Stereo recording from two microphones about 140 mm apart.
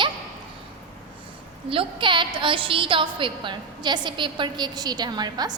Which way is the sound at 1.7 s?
35° right (ahead or behind).